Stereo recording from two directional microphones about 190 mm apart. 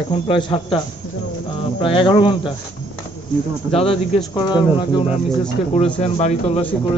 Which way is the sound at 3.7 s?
30° left (ahead or behind).